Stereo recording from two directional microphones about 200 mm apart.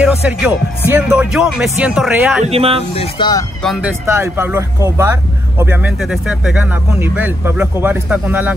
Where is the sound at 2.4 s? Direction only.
30° right (ahead or behind).